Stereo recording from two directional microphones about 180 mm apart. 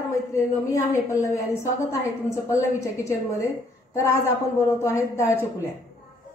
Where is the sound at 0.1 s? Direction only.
15° left (ahead or behind).